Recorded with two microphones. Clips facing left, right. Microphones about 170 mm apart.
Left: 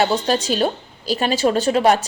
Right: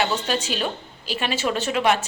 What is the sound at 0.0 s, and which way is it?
A woman's voice, 40° left (ahead or behind).